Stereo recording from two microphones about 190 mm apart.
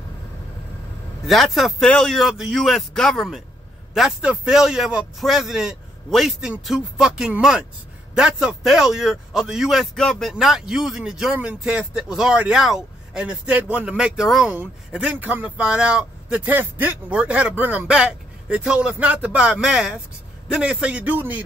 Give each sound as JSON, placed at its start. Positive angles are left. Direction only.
{"t": 1.2, "sound": "a man's voice", "side_deg": 0}